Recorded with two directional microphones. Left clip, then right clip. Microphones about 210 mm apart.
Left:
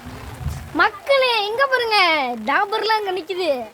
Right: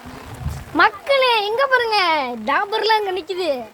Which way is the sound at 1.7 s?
5° left (ahead or behind).